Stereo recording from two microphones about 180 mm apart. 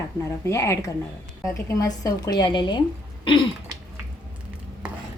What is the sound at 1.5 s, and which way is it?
Dishes, 20° left (ahead or behind).